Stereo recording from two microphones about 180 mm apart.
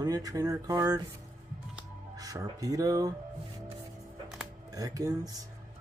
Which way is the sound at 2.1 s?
20° right (ahead or behind).